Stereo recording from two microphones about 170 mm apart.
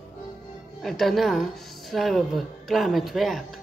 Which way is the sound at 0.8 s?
Centre (ahead or behind).